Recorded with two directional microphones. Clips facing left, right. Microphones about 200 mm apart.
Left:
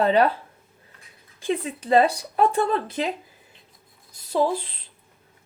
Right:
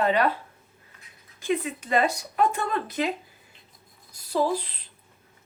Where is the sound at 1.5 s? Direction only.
35° left (ahead or behind).